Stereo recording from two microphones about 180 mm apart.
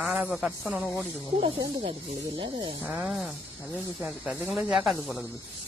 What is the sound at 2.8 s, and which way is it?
Speech, 5° right (ahead or behind).